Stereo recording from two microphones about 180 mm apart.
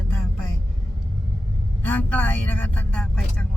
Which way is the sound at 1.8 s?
10° left (ahead or behind).